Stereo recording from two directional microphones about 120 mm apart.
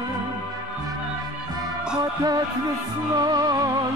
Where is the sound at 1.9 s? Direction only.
35° right (ahead or behind).